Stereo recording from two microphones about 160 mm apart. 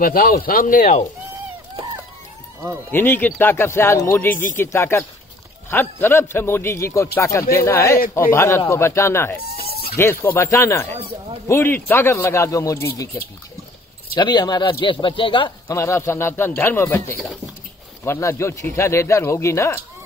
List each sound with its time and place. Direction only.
0.0 s speech: 65° left (ahead or behind)
2.9 s a man's voice: 10° left (ahead or behind)
11.0 s speech: 35° right (ahead or behind)
11.4 s a man's voice: 15° left (ahead or behind)
14.2 s speech: 30° left (ahead or behind)
15.7 s a man's voice: 15° left (ahead or behind)